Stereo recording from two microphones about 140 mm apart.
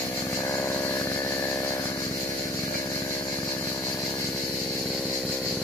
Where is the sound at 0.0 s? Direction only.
25° left (ahead or behind).